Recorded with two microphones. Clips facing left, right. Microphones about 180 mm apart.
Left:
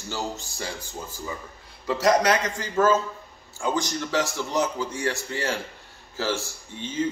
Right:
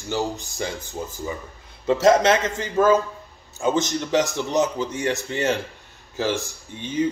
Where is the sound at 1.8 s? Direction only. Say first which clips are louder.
Right 4 dB; 25° right (ahead or behind).